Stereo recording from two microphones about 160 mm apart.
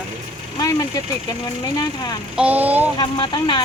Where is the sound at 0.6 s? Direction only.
20° left (ahead or behind).